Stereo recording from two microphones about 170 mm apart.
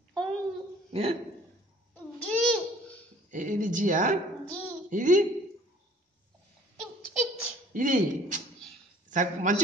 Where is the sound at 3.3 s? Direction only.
50° right (ahead or behind).